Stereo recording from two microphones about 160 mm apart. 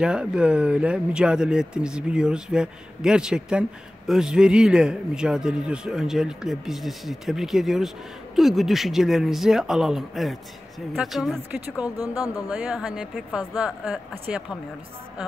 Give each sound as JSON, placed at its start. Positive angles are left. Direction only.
{"t": 0.0, "sound": "a man's voice", "side_deg": -5}
{"t": 12.0, "sound": "speech", "side_deg": 20}
{"t": 12.4, "sound": "a man's voice", "side_deg": -5}